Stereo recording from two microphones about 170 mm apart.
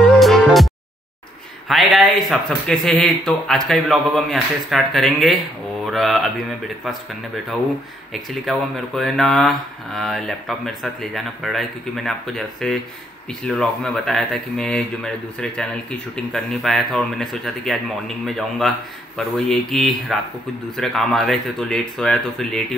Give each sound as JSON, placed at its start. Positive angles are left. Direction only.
{"t": 0.0, "sound": "music", "side_deg": 5}
{"t": 1.7, "sound": "speech", "side_deg": 0}
{"t": 8.1, "sound": "speech", "side_deg": 0}